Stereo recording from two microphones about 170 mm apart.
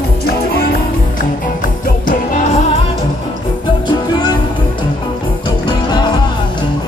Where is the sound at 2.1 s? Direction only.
50° left (ahead or behind).